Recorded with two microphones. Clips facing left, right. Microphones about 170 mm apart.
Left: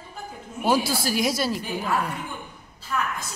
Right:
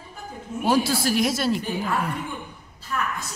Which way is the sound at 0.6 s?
Centre (ahead or behind).